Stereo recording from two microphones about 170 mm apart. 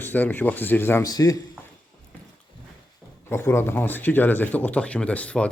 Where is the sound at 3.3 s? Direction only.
15° left (ahead or behind).